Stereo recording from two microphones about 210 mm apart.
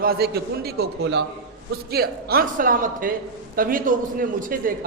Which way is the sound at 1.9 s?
45° right (ahead or behind).